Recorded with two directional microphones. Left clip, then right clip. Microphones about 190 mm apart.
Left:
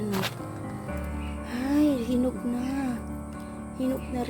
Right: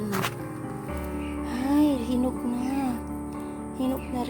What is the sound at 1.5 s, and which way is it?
Music, 5° right (ahead or behind).